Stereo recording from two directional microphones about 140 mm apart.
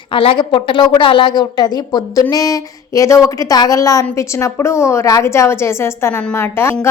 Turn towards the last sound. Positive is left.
turn(degrees=20)  # may be behind; listen again after turning